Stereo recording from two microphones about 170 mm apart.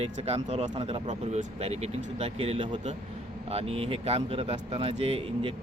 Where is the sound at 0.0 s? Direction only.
35° right (ahead or behind).